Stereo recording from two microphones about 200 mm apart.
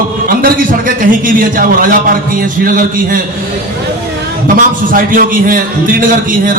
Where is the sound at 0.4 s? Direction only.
45° right (ahead or behind).